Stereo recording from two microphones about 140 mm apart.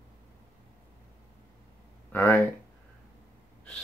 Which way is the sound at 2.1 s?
15° left (ahead or behind).